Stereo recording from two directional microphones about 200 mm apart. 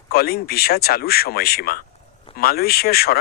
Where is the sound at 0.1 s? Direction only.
50° left (ahead or behind).